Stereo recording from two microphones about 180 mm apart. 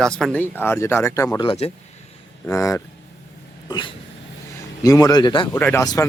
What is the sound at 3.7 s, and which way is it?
Speech, 25° left (ahead or behind).